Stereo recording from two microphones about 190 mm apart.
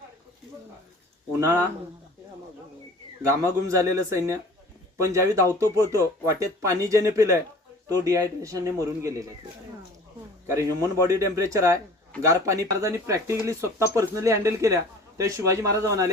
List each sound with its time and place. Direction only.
1.4 s speech: 15° right (ahead or behind)
3.2 s speech: 15° right (ahead or behind)
10.4 s speech: 15° right (ahead or behind)